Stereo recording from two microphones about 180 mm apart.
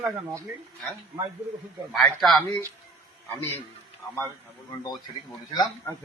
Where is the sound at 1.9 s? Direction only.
Centre (ahead or behind).